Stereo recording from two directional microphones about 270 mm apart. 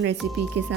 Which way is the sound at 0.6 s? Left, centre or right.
Right.